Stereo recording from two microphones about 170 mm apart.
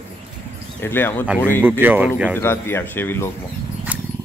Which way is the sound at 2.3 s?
15° left (ahead or behind).